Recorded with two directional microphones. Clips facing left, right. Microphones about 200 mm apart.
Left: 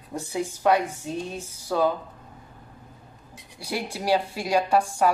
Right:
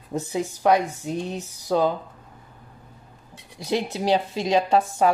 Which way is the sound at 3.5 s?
20° right (ahead or behind).